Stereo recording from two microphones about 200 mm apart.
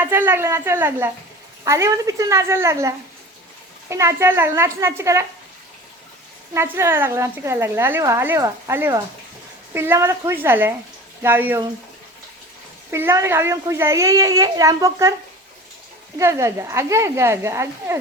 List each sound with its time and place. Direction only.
0.0 s a woman's voice: 10° right (ahead or behind)
6.5 s a woman's voice: 15° right (ahead or behind)
12.9 s a woman's voice: 15° right (ahead or behind)
16.1 s a woman's voice: 15° right (ahead or behind)